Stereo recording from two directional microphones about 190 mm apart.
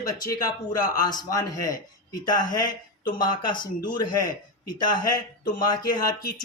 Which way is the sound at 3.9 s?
20° left (ahead or behind).